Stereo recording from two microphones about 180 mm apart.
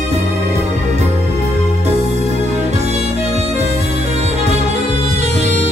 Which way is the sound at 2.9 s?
40° right (ahead or behind).